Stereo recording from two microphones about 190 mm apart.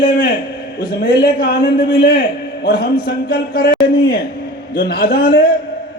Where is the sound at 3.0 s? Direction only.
55° left (ahead or behind).